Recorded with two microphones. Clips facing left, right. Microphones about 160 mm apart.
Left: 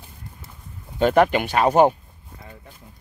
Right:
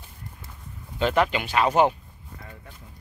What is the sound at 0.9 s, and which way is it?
Speech, 50° left (ahead or behind).